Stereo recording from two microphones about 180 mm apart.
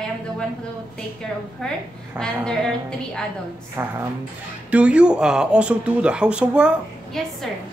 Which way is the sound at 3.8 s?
15° right (ahead or behind).